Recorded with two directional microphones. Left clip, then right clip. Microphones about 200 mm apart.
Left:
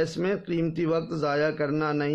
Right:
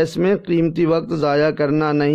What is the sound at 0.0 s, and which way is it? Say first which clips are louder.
A man's voice: right 9 dB; 45° right (ahead or behind).